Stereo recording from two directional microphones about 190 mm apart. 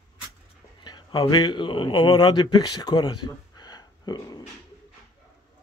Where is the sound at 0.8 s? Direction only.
20° left (ahead or behind).